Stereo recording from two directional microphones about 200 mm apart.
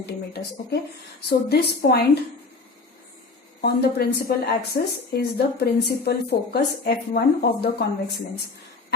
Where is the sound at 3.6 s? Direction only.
50° left (ahead or behind).